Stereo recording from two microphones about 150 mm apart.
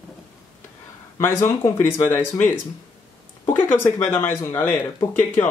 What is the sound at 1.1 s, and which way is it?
Speech, 20° left (ahead or behind).